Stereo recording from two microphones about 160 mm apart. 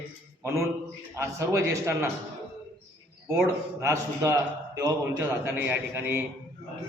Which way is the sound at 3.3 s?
15° right (ahead or behind).